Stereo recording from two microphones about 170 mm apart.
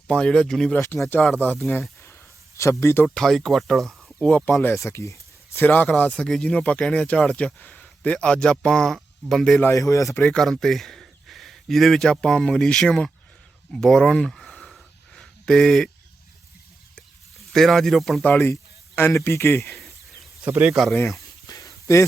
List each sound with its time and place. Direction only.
0.1 s speech: 5° left (ahead or behind)
2.8 s speech: 15° left (ahead or behind)
3.2 s speech: centre (ahead or behind); by 10.2 s 20° left (ahead or behind)
10.2 s speech: centre (ahead or behind)
13.8 s a sound: 5° left (ahead or behind)
16.9 s speech: centre (ahead or behind)
19.7 s a sound: centre (ahead or behind)
20.4 s speech: 10° right (ahead or behind)
20.9 s a sound: 15° left (ahead or behind)